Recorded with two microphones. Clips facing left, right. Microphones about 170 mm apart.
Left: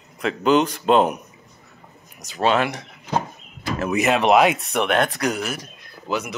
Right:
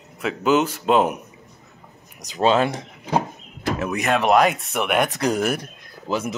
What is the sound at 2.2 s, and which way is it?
Speech, 15° right (ahead or behind).